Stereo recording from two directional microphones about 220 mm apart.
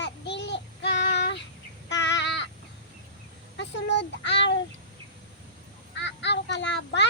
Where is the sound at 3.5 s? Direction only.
50° left (ahead or behind).